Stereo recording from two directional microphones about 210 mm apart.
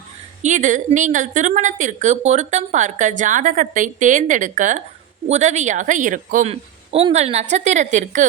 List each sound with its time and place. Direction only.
0.4 s a woman's voice: 35° right (ahead or behind)